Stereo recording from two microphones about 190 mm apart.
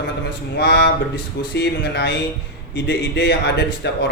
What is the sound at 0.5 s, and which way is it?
Speech, 60° left (ahead or behind).